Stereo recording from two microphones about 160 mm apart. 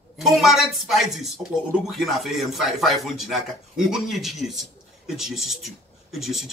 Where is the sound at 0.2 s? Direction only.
Centre (ahead or behind).